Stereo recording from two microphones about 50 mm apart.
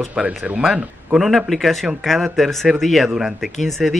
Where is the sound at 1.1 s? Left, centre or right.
Centre.